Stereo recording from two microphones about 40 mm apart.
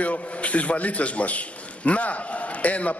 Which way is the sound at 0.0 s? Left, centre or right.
Left.